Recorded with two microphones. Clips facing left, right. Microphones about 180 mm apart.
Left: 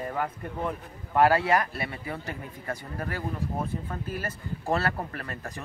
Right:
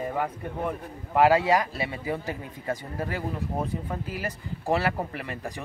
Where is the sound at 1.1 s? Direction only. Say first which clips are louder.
Right 2 dB; 15° right (ahead or behind).